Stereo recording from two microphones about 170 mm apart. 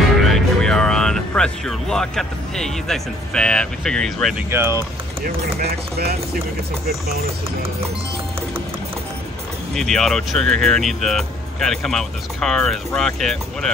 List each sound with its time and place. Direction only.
0.2 s speech: 5° left (ahead or behind)
4.5 s speech: 15° right (ahead or behind)
5.2 s speech: 65° right (ahead or behind)
9.8 s speech: centre (ahead or behind)